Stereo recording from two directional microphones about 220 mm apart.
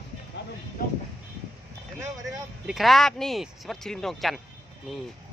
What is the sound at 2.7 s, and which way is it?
Speech, centre (ahead or behind).